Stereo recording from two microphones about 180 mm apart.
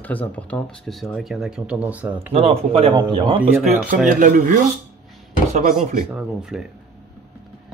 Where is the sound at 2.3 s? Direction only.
35° right (ahead or behind).